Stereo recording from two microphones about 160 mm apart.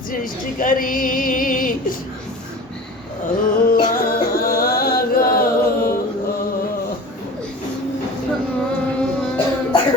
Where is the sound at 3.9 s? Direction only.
65° left (ahead or behind).